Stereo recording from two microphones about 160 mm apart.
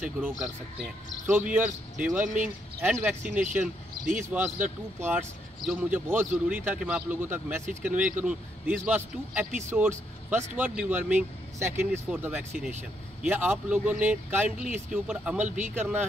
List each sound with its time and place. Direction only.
0.0 s speech: 10° right (ahead or behind)
15.4 s speech: 50° right (ahead or behind)
15.7 s speech: 10° right (ahead or behind)